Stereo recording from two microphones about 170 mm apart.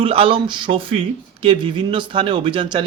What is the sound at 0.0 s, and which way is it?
Speech, 35° right (ahead or behind).